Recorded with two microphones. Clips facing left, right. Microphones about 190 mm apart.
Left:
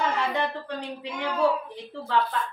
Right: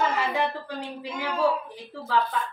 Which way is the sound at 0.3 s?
5° right (ahead or behind).